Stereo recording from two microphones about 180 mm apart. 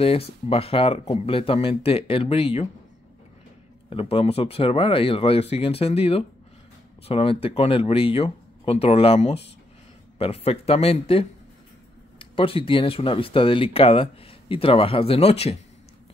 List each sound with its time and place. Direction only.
0.0 s speech: 35° left (ahead or behind)
3.9 s speech: 30° left (ahead or behind)